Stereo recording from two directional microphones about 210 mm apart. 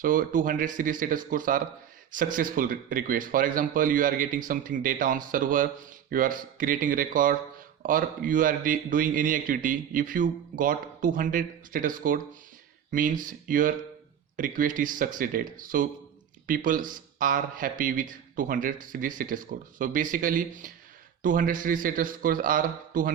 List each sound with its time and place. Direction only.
0.0 s speech: 40° right (ahead or behind)